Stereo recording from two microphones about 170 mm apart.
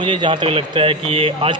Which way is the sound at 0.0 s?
30° right (ahead or behind).